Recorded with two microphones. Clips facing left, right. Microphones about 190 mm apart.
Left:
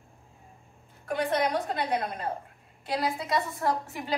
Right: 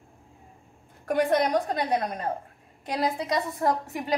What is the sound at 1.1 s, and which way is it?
Speech, 45° right (ahead or behind).